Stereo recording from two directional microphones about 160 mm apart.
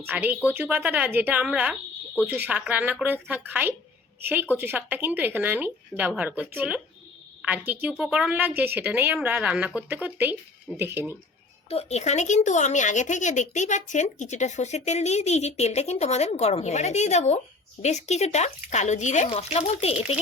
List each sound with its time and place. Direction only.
0.0 s a woman's voice: 10° right (ahead or behind)
11.7 s speech: 40° left (ahead or behind)